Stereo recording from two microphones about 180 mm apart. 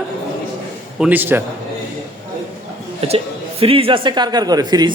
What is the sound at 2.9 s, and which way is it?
Speech, 30° right (ahead or behind).